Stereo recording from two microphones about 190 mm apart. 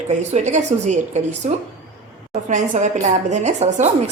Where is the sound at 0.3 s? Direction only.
40° right (ahead or behind).